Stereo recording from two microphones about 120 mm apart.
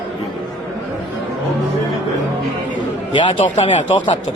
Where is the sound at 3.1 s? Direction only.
45° left (ahead or behind).